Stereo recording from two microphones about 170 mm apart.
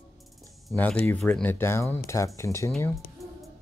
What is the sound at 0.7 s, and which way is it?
Speech, 10° left (ahead or behind).